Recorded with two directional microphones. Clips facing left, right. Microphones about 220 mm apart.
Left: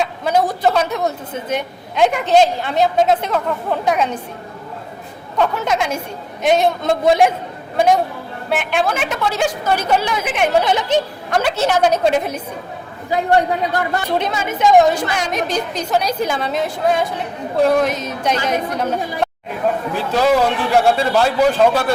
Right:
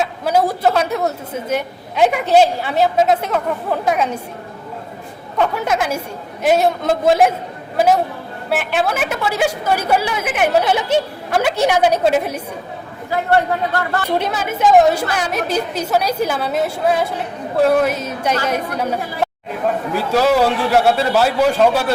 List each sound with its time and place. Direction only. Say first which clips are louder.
0.0 s a woman's voice: right 1 dB; 5° right (ahead or behind)
5.4 s a man's voice: even; 5° right (ahead or behind)
8.4 s a woman's voice: even; 5° right (ahead or behind)
13.1 s a man's voice: left 1 dB; 15° left (ahead or behind)
14.2 s a man's voice: even; 5° right (ahead or behind)